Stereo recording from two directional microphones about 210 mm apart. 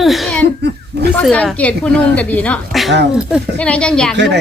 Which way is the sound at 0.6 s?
50° right (ahead or behind).